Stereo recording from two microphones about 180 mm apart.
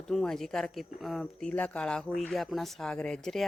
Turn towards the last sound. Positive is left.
turn(degrees=0)  # may be behind; listen again after turning